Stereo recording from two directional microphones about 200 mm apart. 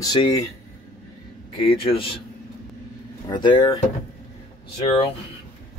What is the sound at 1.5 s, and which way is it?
Speech, 25° left (ahead or behind).